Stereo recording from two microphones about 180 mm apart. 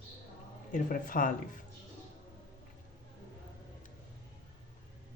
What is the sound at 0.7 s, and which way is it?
Speech, 50° left (ahead or behind).